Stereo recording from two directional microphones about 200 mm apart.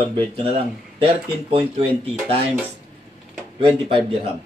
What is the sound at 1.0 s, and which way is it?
Speech, 30° right (ahead or behind).